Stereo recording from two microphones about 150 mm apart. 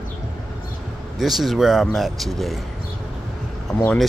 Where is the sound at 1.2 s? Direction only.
Centre (ahead or behind).